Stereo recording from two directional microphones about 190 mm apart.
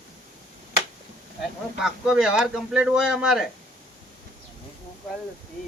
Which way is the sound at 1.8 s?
5° right (ahead or behind).